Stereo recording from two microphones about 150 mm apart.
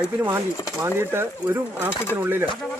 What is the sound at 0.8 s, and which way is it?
Speech, 15° right (ahead or behind).